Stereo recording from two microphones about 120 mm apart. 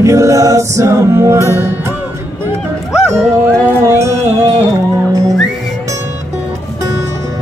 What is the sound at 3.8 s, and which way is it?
Music, 25° right (ahead or behind).